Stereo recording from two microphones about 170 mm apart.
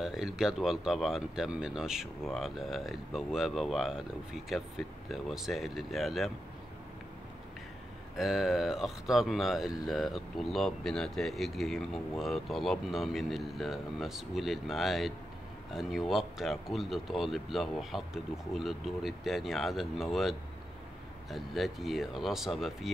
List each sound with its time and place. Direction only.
0.0 s speech: centre (ahead or behind)
8.2 s speech: centre (ahead or behind)